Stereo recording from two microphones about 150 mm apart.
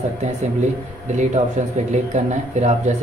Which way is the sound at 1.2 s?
50° right (ahead or behind).